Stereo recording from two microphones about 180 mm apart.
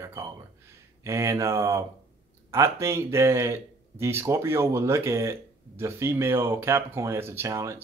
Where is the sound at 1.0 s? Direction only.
15° right (ahead or behind).